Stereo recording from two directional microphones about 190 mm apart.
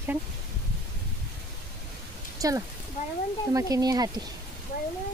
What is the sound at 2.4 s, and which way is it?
Speech, 20° right (ahead or behind).